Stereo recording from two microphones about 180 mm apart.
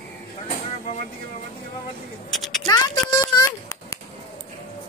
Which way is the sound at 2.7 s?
20° left (ahead or behind).